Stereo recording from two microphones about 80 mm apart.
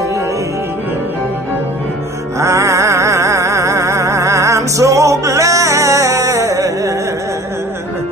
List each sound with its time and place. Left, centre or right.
2.4 s music: right